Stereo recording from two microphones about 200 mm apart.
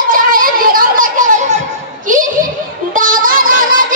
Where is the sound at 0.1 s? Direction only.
45° right (ahead or behind).